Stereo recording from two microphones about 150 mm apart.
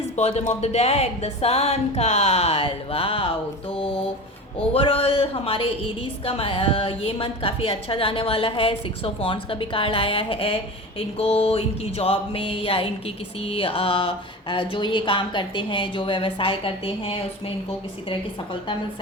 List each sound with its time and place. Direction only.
0.2 s speech: 45° left (ahead or behind)
4.7 s a woman's voice: 35° left (ahead or behind)